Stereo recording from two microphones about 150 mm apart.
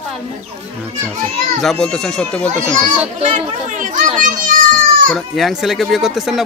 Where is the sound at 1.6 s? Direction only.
5° left (ahead or behind).